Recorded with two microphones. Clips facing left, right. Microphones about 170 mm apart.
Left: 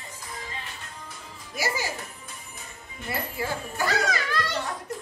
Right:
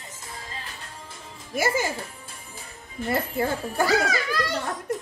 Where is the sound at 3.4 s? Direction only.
50° right (ahead or behind).